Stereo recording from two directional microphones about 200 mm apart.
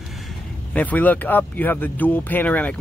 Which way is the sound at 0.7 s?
5° left (ahead or behind).